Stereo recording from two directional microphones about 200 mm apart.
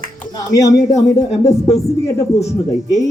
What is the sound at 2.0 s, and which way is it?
Speech, 15° left (ahead or behind).